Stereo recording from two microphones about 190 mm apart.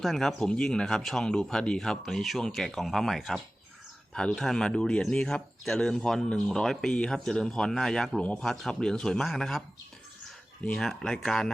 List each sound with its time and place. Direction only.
0.0 s speech: centre (ahead or behind)